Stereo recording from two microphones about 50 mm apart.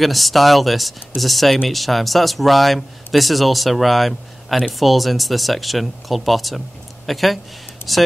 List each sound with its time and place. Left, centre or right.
0.0 s speech: centre